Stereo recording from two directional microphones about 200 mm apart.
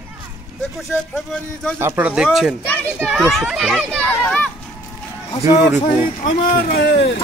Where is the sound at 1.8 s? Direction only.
10° right (ahead or behind).